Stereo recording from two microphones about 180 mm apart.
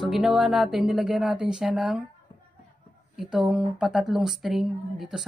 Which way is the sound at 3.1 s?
5° right (ahead or behind).